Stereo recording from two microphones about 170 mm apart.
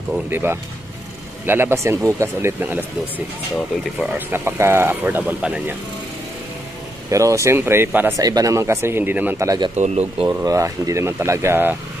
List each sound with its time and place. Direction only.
0.3 s speech: 15° right (ahead or behind)
4.3 s speech: 15° right (ahead or behind)
7.1 s speech: 20° right (ahead or behind)
9.8 s speech: 40° right (ahead or behind)
10.2 s speech: 20° right (ahead or behind)